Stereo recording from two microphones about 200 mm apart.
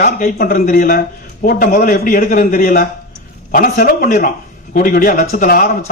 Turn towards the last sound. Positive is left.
turn(degrees=45)  # may be behind; listen again after turning